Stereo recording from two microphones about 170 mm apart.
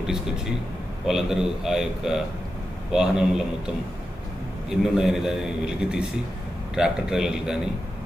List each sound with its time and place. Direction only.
1.0 s a man's voice: 5° right (ahead or behind)